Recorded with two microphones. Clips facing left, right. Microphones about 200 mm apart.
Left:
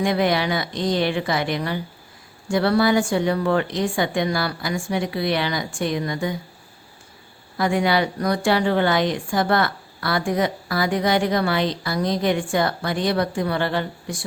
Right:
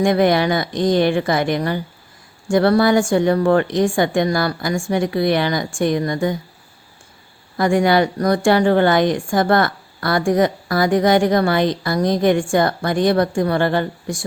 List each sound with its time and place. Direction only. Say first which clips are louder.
0.0 s a woman's voice: right 5 dB; 50° right (ahead or behind)
7.5 s a woman's voice: right 5 dB; 45° right (ahead or behind)